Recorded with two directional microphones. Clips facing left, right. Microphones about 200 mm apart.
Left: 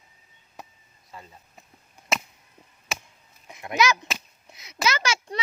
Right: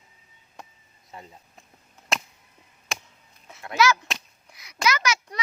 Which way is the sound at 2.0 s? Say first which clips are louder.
Left 1 dB; 15° left (ahead or behind).